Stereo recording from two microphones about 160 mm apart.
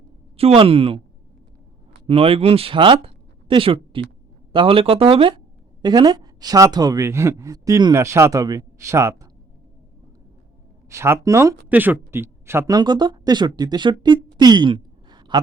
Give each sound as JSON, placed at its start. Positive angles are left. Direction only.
{"t": 0.3, "sound": "speech", "side_deg": -35}
{"t": 2.0, "sound": "a woman's voice", "side_deg": -35}
{"t": 10.8, "sound": "speech", "side_deg": -15}